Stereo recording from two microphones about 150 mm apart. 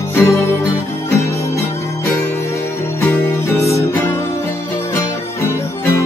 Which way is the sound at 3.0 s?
15° left (ahead or behind).